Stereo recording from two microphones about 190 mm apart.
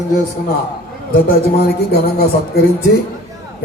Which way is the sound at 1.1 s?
50° left (ahead or behind).